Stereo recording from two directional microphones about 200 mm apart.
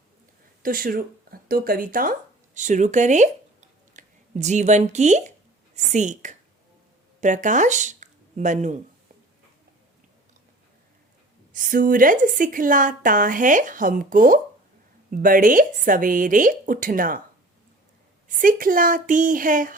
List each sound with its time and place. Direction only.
0.6 s a woman's voice: 45° right (ahead or behind)
11.5 s a woman's voice: 45° right (ahead or behind)
18.3 s speech: 45° right (ahead or behind)